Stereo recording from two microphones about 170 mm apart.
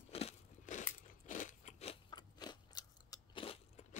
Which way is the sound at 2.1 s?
25° left (ahead or behind).